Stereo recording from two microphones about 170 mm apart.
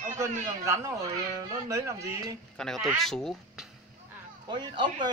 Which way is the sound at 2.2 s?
5° left (ahead or behind).